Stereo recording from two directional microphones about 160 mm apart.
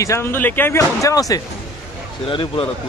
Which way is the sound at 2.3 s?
35° left (ahead or behind).